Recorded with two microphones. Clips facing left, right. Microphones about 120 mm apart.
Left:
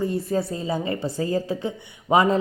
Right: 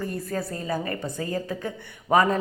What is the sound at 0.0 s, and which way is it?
A woman's voice, 25° left (ahead or behind).